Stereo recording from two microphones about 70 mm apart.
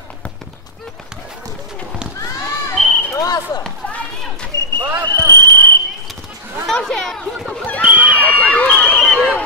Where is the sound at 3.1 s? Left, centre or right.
Left.